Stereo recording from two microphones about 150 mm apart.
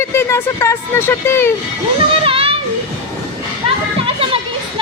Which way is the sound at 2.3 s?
40° right (ahead or behind).